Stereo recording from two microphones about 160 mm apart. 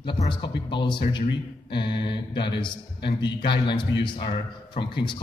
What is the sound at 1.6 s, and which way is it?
Mantra, 30° left (ahead or behind).